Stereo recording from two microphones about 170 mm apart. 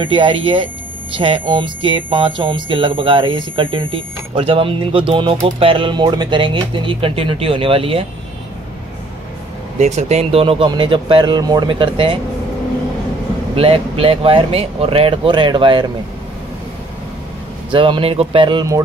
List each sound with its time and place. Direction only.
0.0 s speech: 30° right (ahead or behind)
9.8 s speech: 40° right (ahead or behind)
13.6 s speech: 35° right (ahead or behind)
17.6 s speech: 30° right (ahead or behind)